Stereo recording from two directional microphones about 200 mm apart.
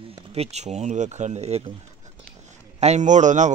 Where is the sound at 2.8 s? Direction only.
35° right (ahead or behind).